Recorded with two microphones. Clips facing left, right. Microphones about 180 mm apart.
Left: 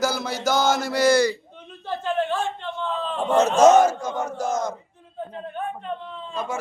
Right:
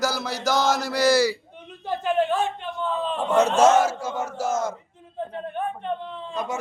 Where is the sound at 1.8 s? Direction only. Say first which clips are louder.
Right 2 dB; 15° right (ahead or behind).